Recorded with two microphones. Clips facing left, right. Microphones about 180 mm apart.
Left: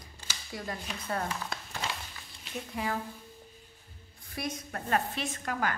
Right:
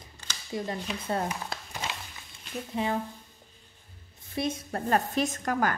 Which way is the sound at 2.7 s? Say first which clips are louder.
Right 5 dB; 25° right (ahead or behind).